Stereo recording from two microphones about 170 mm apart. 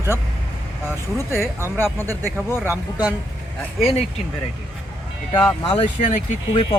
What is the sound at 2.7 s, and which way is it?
Speech, 10° right (ahead or behind).